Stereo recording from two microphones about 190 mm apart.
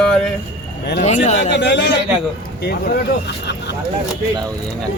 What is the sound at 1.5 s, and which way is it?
A man's voice, 65° left (ahead or behind).